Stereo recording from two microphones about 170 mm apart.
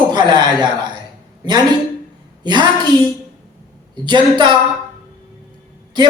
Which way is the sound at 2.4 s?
25° right (ahead or behind).